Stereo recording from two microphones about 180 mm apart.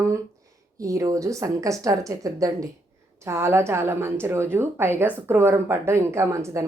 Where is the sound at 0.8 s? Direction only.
20° right (ahead or behind).